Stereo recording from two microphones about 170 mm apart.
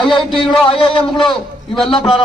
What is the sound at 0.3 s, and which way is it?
A man's voice, 30° left (ahead or behind).